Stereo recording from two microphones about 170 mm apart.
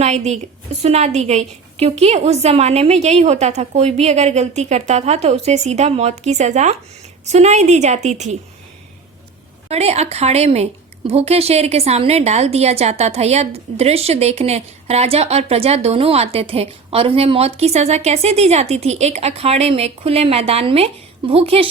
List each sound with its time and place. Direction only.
0.0 s a woman's voice: 40° right (ahead or behind)
9.6 s a woman's voice: 40° right (ahead or behind)